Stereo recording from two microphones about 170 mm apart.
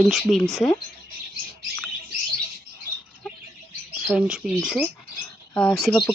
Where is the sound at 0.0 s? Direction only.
Centre (ahead or behind).